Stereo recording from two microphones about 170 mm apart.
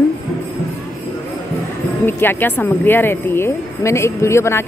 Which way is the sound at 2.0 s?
10° left (ahead or behind).